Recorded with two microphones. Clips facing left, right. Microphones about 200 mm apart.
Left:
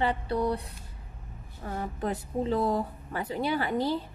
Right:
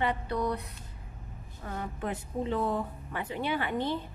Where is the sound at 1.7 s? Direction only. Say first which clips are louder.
Left 3 dB; 35° left (ahead or behind).